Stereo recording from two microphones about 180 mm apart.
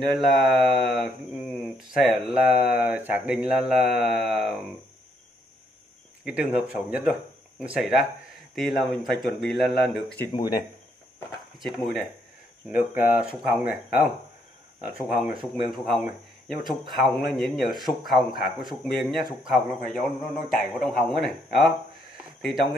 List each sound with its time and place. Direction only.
0.0 s speech: centre (ahead or behind)
6.2 s speech: 5° right (ahead or behind)
10.3 s speech: 20° left (ahead or behind)
11.6 s speech: centre (ahead or behind)
12.6 s speech: 10° right (ahead or behind)
15.7 s speech: centre (ahead or behind)